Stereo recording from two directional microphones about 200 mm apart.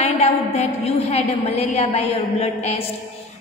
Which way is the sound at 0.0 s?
35° left (ahead or behind).